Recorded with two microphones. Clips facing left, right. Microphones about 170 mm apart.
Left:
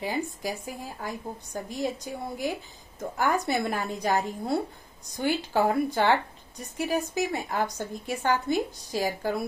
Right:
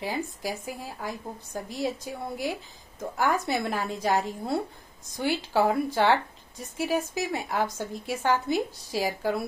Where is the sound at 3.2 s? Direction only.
Centre (ahead or behind).